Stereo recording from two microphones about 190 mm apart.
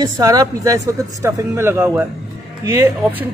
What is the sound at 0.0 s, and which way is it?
Speech, 20° right (ahead or behind).